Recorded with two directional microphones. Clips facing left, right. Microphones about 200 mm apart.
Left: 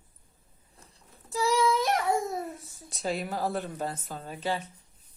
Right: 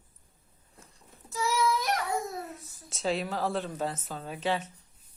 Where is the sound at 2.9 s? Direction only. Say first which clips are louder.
Right 1 dB; centre (ahead or behind).